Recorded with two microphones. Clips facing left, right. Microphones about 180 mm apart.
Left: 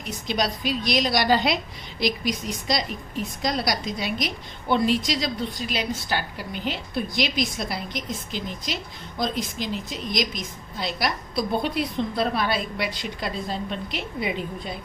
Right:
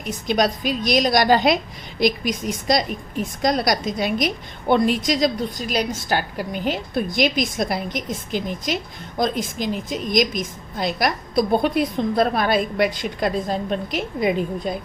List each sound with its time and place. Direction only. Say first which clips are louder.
0.3 s a woman's voice: right 5 dB; 50° right (ahead or behind)